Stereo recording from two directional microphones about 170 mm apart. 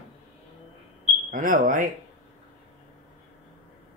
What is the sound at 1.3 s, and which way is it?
Speech, 50° right (ahead or behind).